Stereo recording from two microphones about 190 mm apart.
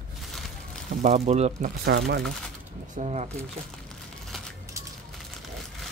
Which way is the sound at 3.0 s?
35° right (ahead or behind).